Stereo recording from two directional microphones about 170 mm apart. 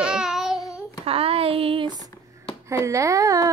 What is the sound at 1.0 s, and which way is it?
Speech, 35° right (ahead or behind).